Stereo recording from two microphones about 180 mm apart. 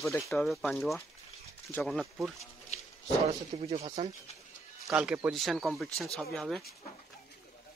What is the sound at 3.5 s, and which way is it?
Speech, 35° right (ahead or behind).